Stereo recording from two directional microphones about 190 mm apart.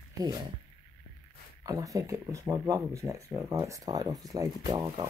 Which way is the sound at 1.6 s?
15° right (ahead or behind).